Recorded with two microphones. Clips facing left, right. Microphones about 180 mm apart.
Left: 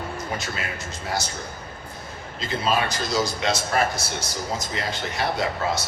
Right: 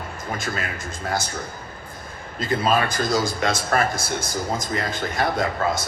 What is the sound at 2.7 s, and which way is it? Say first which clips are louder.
Speech: right 2 dB; 50° right (ahead or behind).